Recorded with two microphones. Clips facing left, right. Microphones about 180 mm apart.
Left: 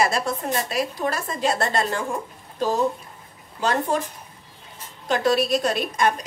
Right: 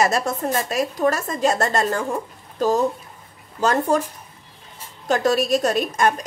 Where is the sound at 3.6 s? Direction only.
45° right (ahead or behind).